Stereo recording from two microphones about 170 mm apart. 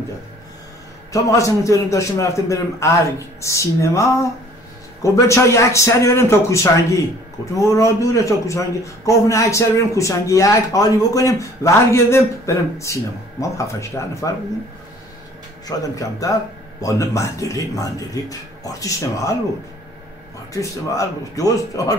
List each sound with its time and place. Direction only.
1.1 s a man's voice: 20° left (ahead or behind)
15.6 s speech: 20° left (ahead or behind)
20.5 s speech: 20° left (ahead or behind)